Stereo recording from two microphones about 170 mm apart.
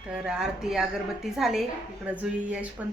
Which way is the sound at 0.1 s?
5° right (ahead or behind).